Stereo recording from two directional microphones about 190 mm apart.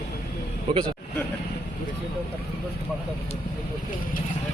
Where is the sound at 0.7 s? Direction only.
30° right (ahead or behind).